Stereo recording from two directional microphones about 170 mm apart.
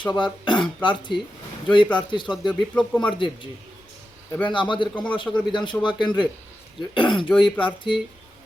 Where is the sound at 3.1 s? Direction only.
30° left (ahead or behind).